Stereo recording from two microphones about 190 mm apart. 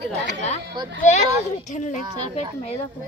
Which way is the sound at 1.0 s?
35° left (ahead or behind).